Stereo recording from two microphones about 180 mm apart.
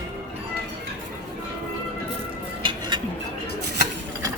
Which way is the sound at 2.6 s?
25° right (ahead or behind).